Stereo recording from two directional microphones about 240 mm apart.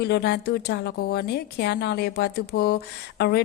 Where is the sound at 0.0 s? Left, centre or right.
Left.